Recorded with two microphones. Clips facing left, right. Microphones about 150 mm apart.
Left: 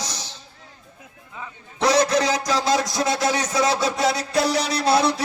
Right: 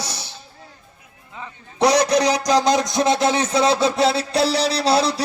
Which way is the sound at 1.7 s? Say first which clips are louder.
Right 2 dB; 15° right (ahead or behind).